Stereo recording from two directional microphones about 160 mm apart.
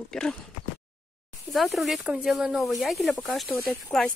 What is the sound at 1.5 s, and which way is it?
Speech, centre (ahead or behind).